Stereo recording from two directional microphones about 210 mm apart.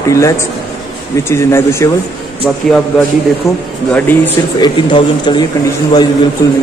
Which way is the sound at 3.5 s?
15° left (ahead or behind).